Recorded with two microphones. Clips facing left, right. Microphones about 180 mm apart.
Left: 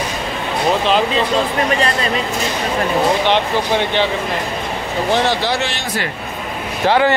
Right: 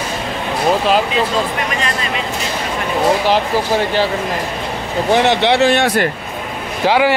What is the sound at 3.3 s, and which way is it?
Speech, 5° right (ahead or behind).